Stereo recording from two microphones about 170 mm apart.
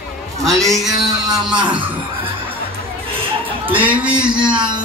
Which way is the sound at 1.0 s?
20° right (ahead or behind).